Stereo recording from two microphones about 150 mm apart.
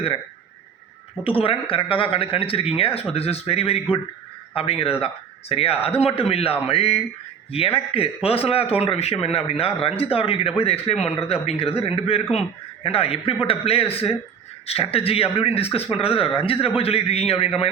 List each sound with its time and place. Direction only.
1.2 s speech: 35° left (ahead or behind)